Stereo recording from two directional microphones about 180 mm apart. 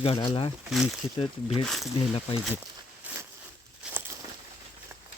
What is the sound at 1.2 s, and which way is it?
Speech, 30° left (ahead or behind).